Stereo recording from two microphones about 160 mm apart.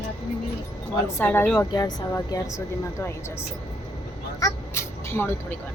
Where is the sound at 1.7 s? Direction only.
25° left (ahead or behind).